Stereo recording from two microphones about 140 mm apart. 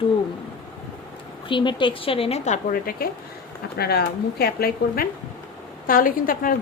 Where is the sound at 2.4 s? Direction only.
75° left (ahead or behind); by 3.0 s 90° left.